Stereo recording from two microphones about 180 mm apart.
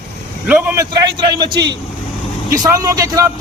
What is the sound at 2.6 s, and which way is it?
Speech, 20° right (ahead or behind).